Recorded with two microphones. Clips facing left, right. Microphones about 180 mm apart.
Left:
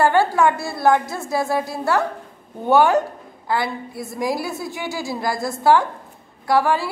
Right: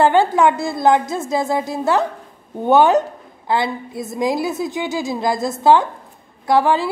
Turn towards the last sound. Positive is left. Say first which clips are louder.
# right 3 dB
turn(degrees=-20)  # may be behind; listen again after turning